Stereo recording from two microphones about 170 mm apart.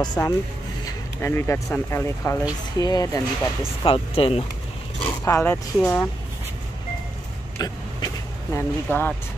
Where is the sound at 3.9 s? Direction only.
35° left (ahead or behind).